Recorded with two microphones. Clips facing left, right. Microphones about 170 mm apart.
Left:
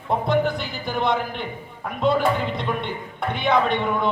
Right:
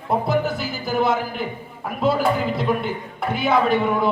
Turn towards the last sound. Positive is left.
turn(degrees=-5)  # may be behind; listen again after turning